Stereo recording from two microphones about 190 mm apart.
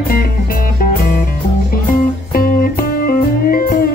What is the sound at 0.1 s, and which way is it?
Music, 50° left (ahead or behind).